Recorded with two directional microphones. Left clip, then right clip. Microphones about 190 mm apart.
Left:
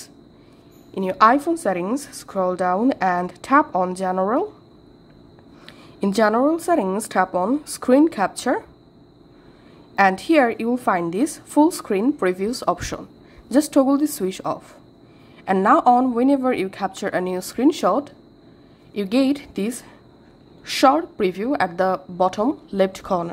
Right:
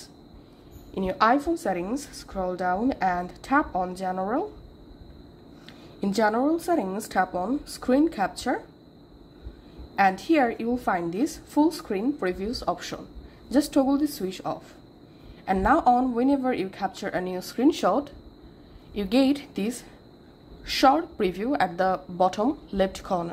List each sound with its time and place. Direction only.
0.9 s a woman's voice: 20° left (ahead or behind)
5.7 s a woman's voice: 25° left (ahead or behind)
9.9 s a woman's voice: 25° left (ahead or behind)